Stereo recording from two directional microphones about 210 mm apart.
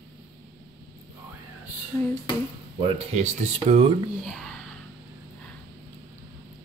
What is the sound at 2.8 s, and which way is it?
Speech, 30° right (ahead or behind).